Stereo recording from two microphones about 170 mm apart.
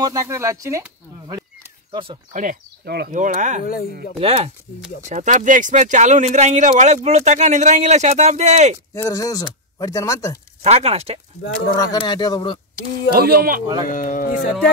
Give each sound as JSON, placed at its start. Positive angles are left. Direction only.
{"t": 0.0, "sound": "speech", "side_deg": -20}
{"t": 1.9, "sound": "speech", "side_deg": -30}
{"t": 2.8, "sound": "speech", "side_deg": -65}
{"t": 3.2, "sound": "speech", "side_deg": -50}
{"t": 3.6, "sound": "speech", "side_deg": 60}
{"t": 4.2, "sound": "speech", "side_deg": -35}
{"t": 8.9, "sound": "speech", "side_deg": 20}
{"t": 10.6, "sound": "speech", "side_deg": -40}
{"t": 11.6, "sound": "speech", "side_deg": 20}
{"t": 13.1, "sound": "speech", "side_deg": -60}
{"t": 13.8, "sound": "speech", "side_deg": 50}